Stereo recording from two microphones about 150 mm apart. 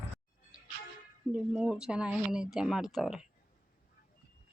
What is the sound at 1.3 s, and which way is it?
A woman's voice, 5° right (ahead or behind).